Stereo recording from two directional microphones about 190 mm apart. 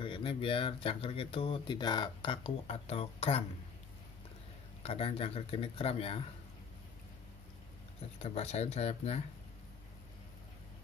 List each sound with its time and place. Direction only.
0.0 s speech: 30° left (ahead or behind)
4.8 s speech: 30° left (ahead or behind)
8.2 s speech: 35° left (ahead or behind)